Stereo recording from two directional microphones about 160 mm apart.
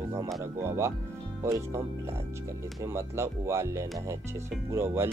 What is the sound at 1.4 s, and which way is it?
Speech, 20° right (ahead or behind).